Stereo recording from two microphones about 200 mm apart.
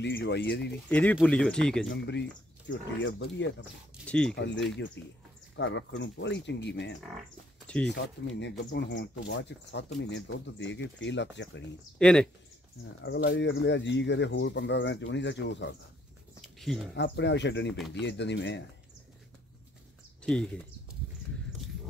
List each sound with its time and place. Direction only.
0.0 s speech: 60° left (ahead or behind)
0.8 s speech: 10° left (ahead or behind)
1.9 s speech: 60° left (ahead or behind)
3.9 s speech: 5° left (ahead or behind)
4.4 s speech: 65° left (ahead or behind)
7.6 s speech: 5° left (ahead or behind)
7.9 s speech: 60° left (ahead or behind)
12.0 s speech: 5° left (ahead or behind)
13.0 s speech: 65° left (ahead or behind)
16.3 s a sound: centre (ahead or behind)
16.9 s speech: 60° left (ahead or behind)
17.7 s speech: centre (ahead or behind)
18.0 s speech: 60° left (ahead or behind)
20.2 s speech: 5° left (ahead or behind)